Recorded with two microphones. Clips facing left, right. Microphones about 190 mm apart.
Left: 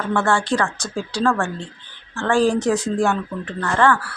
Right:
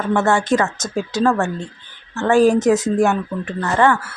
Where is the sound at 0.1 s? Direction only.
20° right (ahead or behind).